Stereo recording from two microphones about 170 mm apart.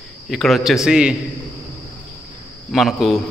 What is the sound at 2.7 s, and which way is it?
Speech, centre (ahead or behind).